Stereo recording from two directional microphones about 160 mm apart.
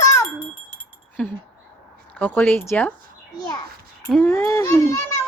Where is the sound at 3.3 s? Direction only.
25° left (ahead or behind).